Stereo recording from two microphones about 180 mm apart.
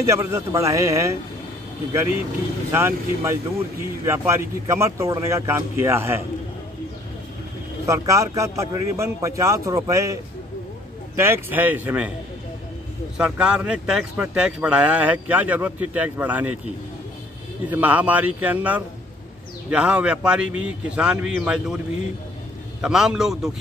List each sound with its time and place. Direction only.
0.0 s speech: 15° right (ahead or behind)
7.8 s speech: 15° right (ahead or behind)
11.1 s speech: 15° right (ahead or behind)
13.2 s speech: 5° right (ahead or behind)
17.6 s speech: 10° right (ahead or behind)
22.8 s a man's voice: 5° right (ahead or behind)